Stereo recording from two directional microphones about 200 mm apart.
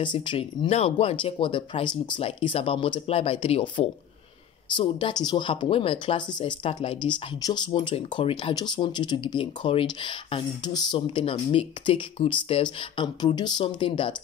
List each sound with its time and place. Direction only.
0.0 s speech: 25° left (ahead or behind)